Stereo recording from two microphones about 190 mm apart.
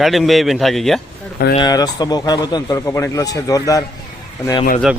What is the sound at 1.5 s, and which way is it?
A man's voice, 20° left (ahead or behind).